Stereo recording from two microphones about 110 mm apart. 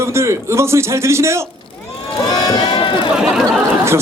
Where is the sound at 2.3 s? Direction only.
40° left (ahead or behind).